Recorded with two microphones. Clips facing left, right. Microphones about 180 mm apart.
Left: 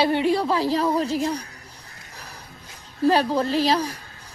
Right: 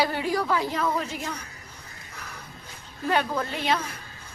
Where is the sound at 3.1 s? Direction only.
30° left (ahead or behind).